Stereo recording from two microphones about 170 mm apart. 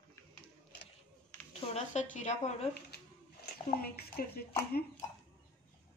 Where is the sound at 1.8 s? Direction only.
45° left (ahead or behind).